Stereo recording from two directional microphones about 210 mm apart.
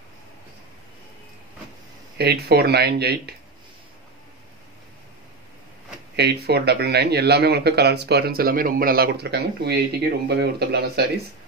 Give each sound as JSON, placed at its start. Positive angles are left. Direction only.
{"t": 2.1, "sound": "speech", "side_deg": -50}
{"t": 6.1, "sound": "speech", "side_deg": -50}